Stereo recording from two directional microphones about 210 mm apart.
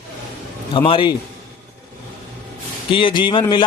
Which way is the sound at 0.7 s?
25° left (ahead or behind).